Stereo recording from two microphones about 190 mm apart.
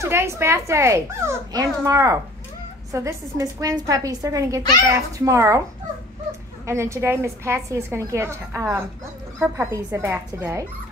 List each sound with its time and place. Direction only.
0.0 s a woman's voice: 15° right (ahead or behind)
6.6 s a woman's voice: 15° right (ahead or behind)